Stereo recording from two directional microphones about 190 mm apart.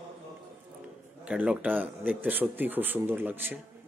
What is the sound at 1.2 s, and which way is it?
Speech, 5° right (ahead or behind).